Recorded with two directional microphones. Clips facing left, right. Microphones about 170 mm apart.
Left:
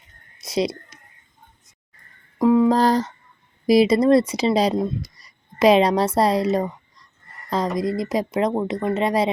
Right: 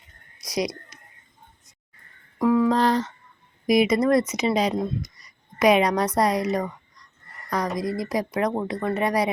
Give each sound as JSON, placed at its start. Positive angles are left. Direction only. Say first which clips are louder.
{"t": 0.3, "sound": "whispering", "louder": "left 4 dB", "side_deg": 25}
{"t": 2.4, "sound": "speech", "louder": "left 4 dB", "side_deg": 25}
{"t": 2.7, "sound": "a sound", "louder": "left 3 dB", "side_deg": 35}
{"t": 3.7, "sound": "speech", "louder": "left 4 dB", "side_deg": 30}
{"t": 7.8, "sound": "speech", "louder": "left 3 dB", "side_deg": 25}